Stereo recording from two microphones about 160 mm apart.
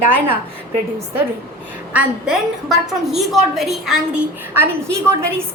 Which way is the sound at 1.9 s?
5° right (ahead or behind).